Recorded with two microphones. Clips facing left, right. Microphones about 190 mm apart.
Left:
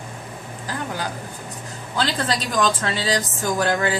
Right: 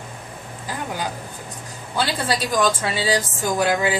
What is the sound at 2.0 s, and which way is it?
A woman's voice, 10° right (ahead or behind).